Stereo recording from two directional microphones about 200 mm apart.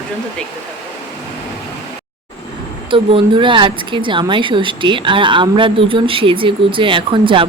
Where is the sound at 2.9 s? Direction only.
25° right (ahead or behind).